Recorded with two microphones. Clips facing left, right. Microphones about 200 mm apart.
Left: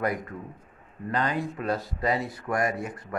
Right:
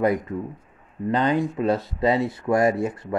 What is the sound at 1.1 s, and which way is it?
Speech, 25° right (ahead or behind).